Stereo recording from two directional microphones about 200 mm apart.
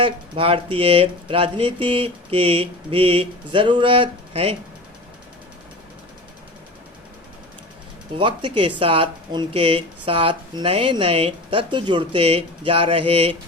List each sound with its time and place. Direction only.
0.0 s speech: 25° right (ahead or behind)
8.2 s speech: 25° right (ahead or behind)